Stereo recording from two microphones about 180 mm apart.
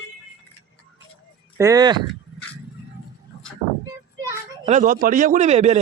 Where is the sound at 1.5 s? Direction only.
20° right (ahead or behind).